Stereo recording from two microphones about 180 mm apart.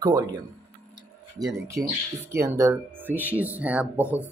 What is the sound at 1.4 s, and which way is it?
Speech, 20° right (ahead or behind).